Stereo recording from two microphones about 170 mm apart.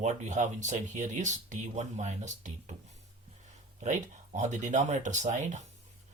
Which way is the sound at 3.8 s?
45° right (ahead or behind).